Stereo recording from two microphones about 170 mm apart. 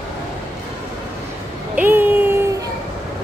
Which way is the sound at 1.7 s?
10° right (ahead or behind).